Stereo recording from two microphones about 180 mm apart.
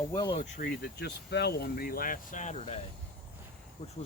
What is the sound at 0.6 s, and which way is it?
Speech, 60° left (ahead or behind).